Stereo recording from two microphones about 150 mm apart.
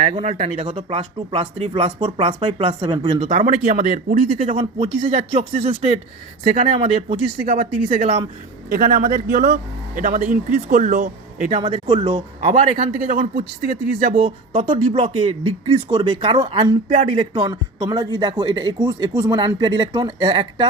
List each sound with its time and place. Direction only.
0.0 s speech: 50° right (ahead or behind); by 3.2 s 30° right (ahead or behind)
3.2 s speech: 55° right (ahead or behind)
4.3 s speech: 40° right (ahead or behind)
5.6 s speech: 50° right (ahead or behind)
6.4 s speech: 65° right (ahead or behind)
6.7 s speech: 35° right (ahead or behind)
7.4 s speech: 75° right (ahead or behind)
8.0 s speech: 35° right (ahead or behind)
8.7 s speech: 60° right (ahead or behind)
11.6 s speech: 35° right (ahead or behind)
13.1 s speech: 70° right (ahead or behind)
14.2 s speech: 35° right (ahead or behind)